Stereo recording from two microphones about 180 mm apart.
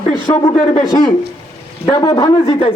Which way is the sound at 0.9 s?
25° left (ahead or behind).